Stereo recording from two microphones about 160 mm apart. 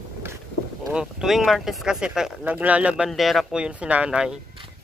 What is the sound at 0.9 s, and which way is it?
Speech, centre (ahead or behind).